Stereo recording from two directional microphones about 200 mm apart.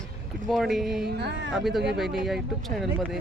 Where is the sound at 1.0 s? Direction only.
55° right (ahead or behind).